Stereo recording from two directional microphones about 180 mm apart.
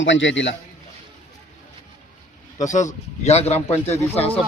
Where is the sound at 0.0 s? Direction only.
90° left.